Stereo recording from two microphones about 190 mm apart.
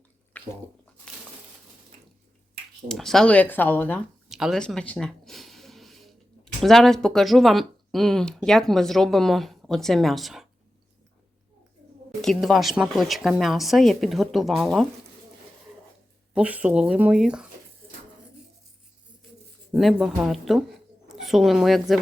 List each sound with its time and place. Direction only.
0.4 s a sound: 10° left (ahead or behind)
2.9 s speech: centre (ahead or behind)
4.3 s speech: centre (ahead or behind)
12.2 s speech: centre (ahead or behind)
16.3 s speech: 5° right (ahead or behind)
19.7 s a woman's voice: centre (ahead or behind)